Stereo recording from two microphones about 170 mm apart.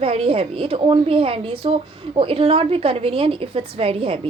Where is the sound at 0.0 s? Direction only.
35° right (ahead or behind).